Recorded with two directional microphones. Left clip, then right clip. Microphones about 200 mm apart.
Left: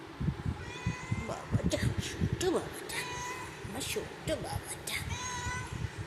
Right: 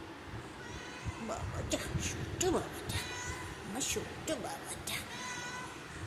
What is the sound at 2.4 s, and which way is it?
Speech, 10° right (ahead or behind).